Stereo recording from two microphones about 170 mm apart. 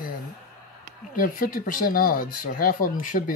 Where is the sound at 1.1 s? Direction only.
55° left (ahead or behind).